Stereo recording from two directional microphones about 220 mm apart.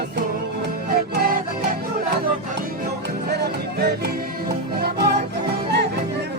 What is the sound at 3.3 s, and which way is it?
Music, 45° right (ahead or behind).